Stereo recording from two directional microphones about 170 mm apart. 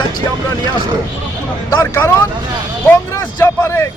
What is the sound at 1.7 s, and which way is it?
Speech, 20° left (ahead or behind).